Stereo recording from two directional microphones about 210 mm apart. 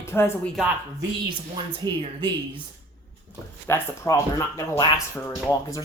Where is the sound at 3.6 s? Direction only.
10° left (ahead or behind).